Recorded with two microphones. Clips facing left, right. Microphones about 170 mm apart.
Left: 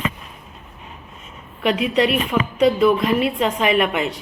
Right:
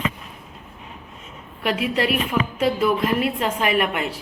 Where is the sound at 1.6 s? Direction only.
5° right (ahead or behind).